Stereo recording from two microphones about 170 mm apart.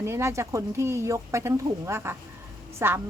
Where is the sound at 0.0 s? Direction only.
15° right (ahead or behind).